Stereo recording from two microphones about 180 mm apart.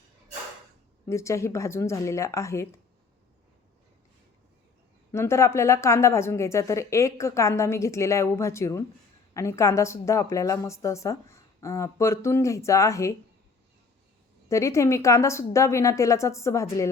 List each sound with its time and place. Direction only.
1.0 s a woman's voice: 15° left (ahead or behind)
5.1 s a woman's voice: 15° left (ahead or behind)
14.5 s a woman's voice: 15° left (ahead or behind)